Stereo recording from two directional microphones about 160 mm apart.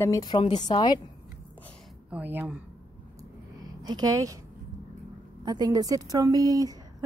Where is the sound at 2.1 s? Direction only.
10° right (ahead or behind).